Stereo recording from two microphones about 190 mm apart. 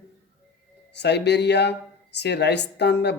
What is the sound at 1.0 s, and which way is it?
Speech, 65° left (ahead or behind).